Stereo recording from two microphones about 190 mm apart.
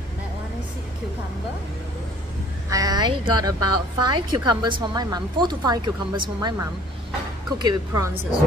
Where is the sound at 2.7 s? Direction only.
20° right (ahead or behind).